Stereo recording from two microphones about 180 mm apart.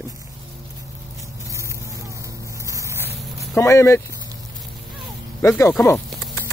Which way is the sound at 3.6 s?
15° left (ahead or behind).